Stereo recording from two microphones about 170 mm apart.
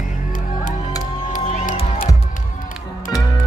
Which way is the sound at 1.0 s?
50° left (ahead or behind).